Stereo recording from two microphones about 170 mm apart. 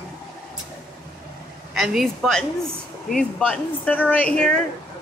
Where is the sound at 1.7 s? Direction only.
Centre (ahead or behind).